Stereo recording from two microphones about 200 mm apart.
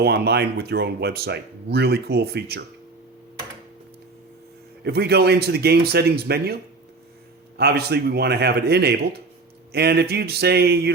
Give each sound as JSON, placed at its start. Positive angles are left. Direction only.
{"t": 0.0, "sound": "speech", "side_deg": -55}
{"t": 4.8, "sound": "speech", "side_deg": -55}